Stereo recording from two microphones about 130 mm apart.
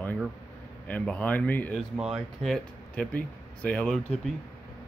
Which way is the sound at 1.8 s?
Centre (ahead or behind).